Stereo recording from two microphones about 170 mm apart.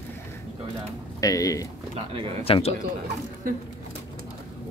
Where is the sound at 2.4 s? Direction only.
35° left (ahead or behind).